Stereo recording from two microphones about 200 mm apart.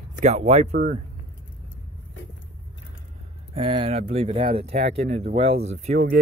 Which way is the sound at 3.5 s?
25° right (ahead or behind).